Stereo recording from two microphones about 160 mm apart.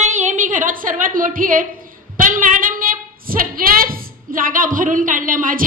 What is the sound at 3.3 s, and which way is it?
A woman's voice, 65° right (ahead or behind).